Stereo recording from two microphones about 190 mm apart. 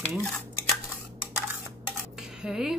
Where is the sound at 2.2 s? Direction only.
5° right (ahead or behind).